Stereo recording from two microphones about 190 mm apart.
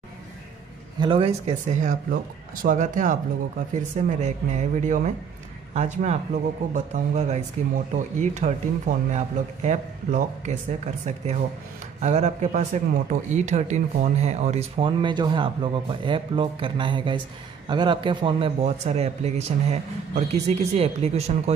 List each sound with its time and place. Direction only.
0.9 s a man's voice: 25° right (ahead or behind)